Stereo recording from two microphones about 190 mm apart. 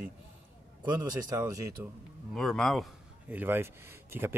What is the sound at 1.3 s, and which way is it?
Speech, 15° right (ahead or behind).